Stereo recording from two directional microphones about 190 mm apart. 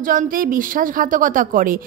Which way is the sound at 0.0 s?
45° right (ahead or behind).